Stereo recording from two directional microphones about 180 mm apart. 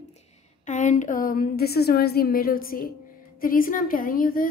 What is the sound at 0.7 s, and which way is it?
A woman's voice, 45° left (ahead or behind).